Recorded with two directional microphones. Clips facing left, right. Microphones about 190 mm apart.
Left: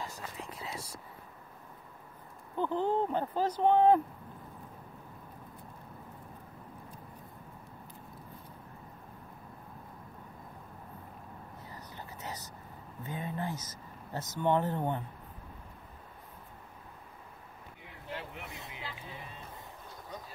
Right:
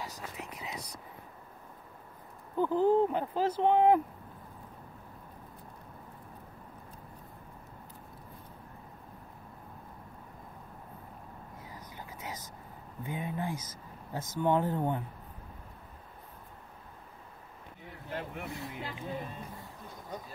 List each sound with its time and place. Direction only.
0.4 s whispering: 15° right (ahead or behind)
2.5 s speech: 5° right (ahead or behind)
11.6 s a sound: 10° right (ahead or behind)
13.0 s speech: 10° right (ahead or behind)
18.1 s vehicle: 45° right (ahead or behind)
18.7 s a sound: 45° right (ahead or behind)